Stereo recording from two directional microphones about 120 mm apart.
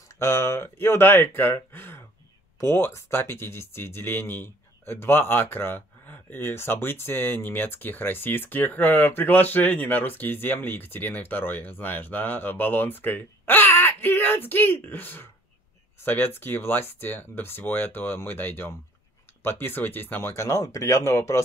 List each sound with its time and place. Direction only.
0.1 s speech: 20° left (ahead or behind)